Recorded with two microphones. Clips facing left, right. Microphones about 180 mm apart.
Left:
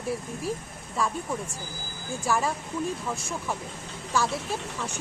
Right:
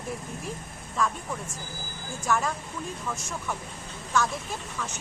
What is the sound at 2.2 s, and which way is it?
Speech, 10° left (ahead or behind).